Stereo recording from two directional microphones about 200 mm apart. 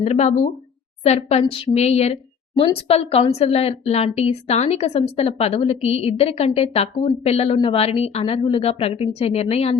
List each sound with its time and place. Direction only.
0.0 s a woman's voice: 35° left (ahead or behind)